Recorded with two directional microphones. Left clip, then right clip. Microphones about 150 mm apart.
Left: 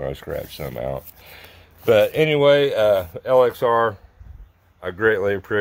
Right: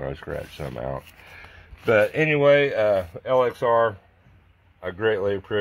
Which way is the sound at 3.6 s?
20° left (ahead or behind).